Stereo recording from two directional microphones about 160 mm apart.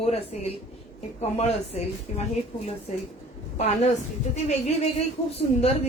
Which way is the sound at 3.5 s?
45° left (ahead or behind).